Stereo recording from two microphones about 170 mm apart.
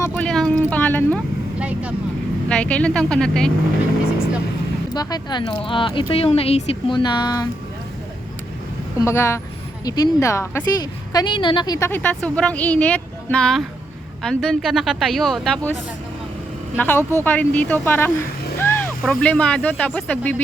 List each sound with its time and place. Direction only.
0.0 s speech: 5° left (ahead or behind)
1.5 s speech: 5° right (ahead or behind)
2.5 s speech: 5° left (ahead or behind)
4.9 s speech: 25° left (ahead or behind)
9.0 s speech: 15° left (ahead or behind)
11.9 s speech: 10° left (ahead or behind)
16.7 s speech: 10° left (ahead or behind)
17.0 s speech: 15° right (ahead or behind)
17.2 s speech: 10° left (ahead or behind)
18.6 s vehicle: 15° left (ahead or behind)
19.0 s speech: 5° left (ahead or behind)